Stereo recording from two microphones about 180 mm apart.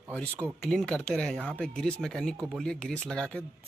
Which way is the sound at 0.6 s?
5° left (ahead or behind).